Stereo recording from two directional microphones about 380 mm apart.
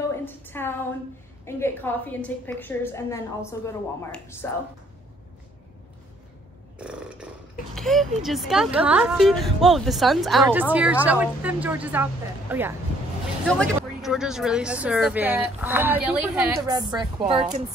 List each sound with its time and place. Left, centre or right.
0.1 s a sound: centre
1.4 s a woman's voice: centre
6.8 s a woman's voice: centre